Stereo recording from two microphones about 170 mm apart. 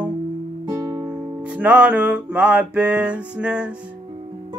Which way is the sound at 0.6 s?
20° right (ahead or behind).